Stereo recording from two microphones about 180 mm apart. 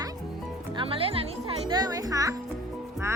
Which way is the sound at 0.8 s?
30° right (ahead or behind).